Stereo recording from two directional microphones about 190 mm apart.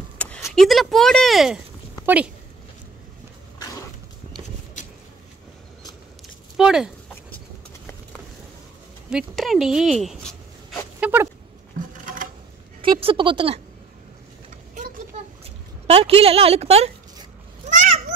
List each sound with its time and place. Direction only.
0.2 s speech: 5° left (ahead or behind)
6.5 s speech: 5° right (ahead or behind)
9.1 s speech: centre (ahead or behind)
12.8 s speech: 25° right (ahead or behind)
15.9 s a woman's voice: 30° right (ahead or behind)
17.6 s cat: 40° right (ahead or behind)